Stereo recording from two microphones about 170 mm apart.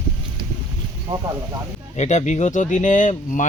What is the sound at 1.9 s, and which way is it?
Speech, 40° left (ahead or behind).